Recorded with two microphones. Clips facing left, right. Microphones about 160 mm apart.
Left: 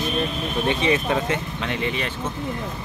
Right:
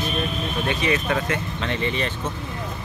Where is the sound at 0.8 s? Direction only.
20° left (ahead or behind).